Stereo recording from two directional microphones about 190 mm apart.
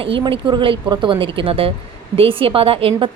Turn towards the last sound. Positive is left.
turn(degrees=-30)  # may be behind; listen again after turning